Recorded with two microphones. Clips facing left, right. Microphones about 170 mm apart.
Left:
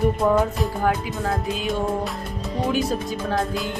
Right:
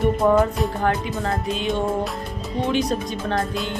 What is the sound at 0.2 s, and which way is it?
Music, centre (ahead or behind).